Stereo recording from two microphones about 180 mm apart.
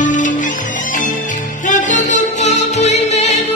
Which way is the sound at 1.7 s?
45° left (ahead or behind).